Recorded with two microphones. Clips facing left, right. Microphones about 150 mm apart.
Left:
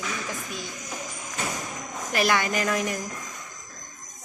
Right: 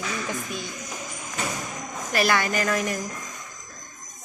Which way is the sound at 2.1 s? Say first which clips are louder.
Right 1 dB; 15° left (ahead or behind).